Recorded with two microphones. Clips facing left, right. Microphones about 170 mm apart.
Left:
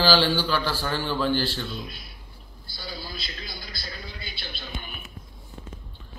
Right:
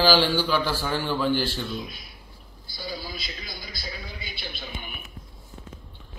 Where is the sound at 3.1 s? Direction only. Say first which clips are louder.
Even; 50° right (ahead or behind).